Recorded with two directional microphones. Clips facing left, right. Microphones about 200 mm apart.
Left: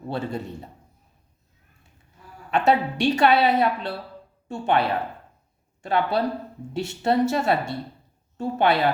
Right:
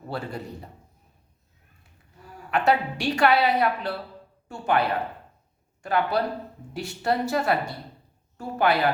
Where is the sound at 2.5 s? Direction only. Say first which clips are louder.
Left 2 dB; 25° left (ahead or behind).